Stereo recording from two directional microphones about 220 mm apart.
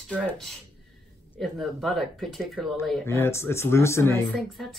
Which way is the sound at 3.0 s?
10° left (ahead or behind).